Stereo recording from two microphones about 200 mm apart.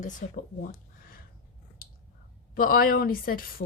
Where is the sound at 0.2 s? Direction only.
40° left (ahead or behind).